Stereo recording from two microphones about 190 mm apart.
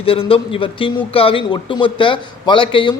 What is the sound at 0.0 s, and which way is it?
A man's voice, 30° left (ahead or behind).